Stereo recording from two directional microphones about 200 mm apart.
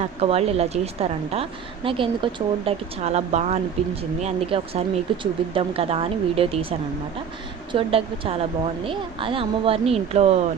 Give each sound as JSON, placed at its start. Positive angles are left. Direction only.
{"t": 0.0, "sound": "a woman's voice", "side_deg": -30}